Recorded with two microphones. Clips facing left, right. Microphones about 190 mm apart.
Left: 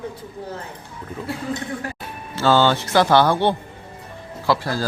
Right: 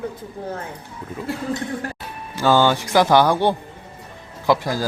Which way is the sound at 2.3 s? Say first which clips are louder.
Even; 15° right (ahead or behind).